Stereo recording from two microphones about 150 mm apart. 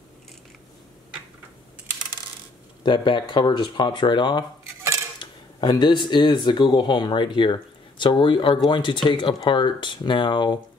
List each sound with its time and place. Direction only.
2.8 s speech: 30° left (ahead or behind)